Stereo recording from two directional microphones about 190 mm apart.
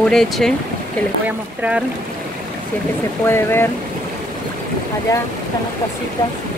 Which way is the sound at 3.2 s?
10° left (ahead or behind).